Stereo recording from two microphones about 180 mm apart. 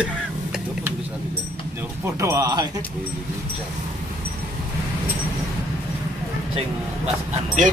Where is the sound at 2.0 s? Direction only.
15° right (ahead or behind).